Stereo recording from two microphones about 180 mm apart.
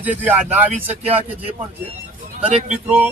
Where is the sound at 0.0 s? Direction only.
10° right (ahead or behind).